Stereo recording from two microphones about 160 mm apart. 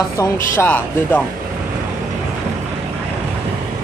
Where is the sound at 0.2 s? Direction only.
15° left (ahead or behind).